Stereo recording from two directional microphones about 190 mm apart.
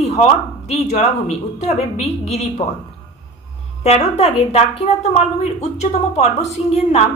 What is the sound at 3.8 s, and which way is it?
Speech, 35° left (ahead or behind).